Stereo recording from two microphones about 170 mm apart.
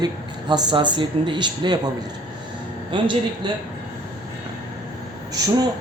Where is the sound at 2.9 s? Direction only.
30° right (ahead or behind).